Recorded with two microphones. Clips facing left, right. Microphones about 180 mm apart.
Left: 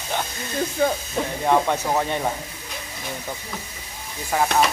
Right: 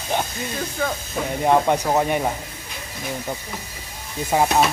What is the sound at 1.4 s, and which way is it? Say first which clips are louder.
Speech: right 3 dB; 15° right (ahead or behind).